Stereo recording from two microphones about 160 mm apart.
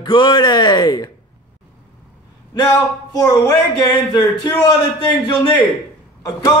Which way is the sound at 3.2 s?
25° left (ahead or behind).